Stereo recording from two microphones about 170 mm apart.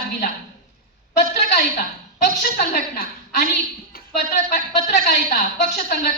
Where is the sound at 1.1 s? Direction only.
50° left (ahead or behind).